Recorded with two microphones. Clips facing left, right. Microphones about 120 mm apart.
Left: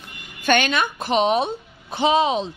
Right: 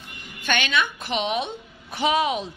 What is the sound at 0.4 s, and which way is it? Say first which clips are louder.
A woman's voice: left 5 dB; 40° left (ahead or behind).